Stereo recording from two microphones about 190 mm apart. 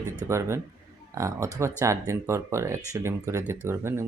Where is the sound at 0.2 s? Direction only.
15° right (ahead or behind).